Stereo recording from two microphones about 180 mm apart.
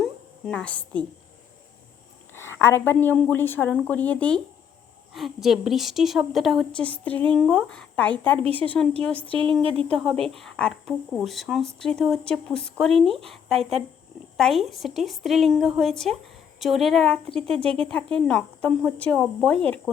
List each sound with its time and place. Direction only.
0.0 s a sound: 5° left (ahead or behind)
2.3 s a woman's voice: 15° left (ahead or behind)
9.3 s speech: 30° right (ahead or behind)
10.0 s a woman's voice: centre (ahead or behind)